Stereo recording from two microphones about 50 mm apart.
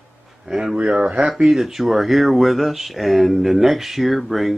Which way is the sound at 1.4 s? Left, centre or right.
Centre.